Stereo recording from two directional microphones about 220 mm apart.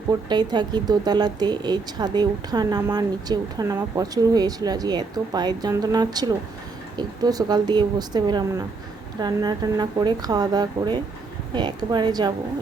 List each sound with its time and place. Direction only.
0.1 s a woman's voice: 20° right (ahead or behind)